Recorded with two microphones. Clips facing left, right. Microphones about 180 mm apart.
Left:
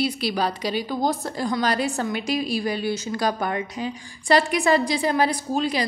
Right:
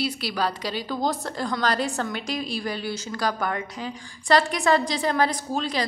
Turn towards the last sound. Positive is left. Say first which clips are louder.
# left 3 dB
turn(degrees=10)  # may be behind; listen again after turning